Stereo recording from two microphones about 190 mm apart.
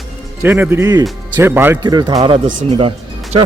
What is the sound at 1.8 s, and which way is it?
Speech, 20° right (ahead or behind).